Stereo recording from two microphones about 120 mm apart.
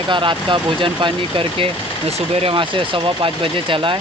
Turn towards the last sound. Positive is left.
turn(degrees=-45)  # may be behind; listen again after turning